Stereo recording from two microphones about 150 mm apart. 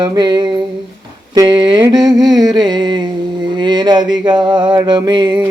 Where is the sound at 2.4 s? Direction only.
30° right (ahead or behind).